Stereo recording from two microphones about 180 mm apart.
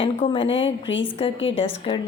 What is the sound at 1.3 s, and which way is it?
Speech, 90° left.